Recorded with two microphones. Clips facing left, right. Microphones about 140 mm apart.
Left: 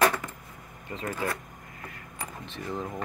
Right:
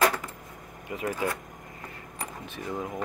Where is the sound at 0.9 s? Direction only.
10° right (ahead or behind).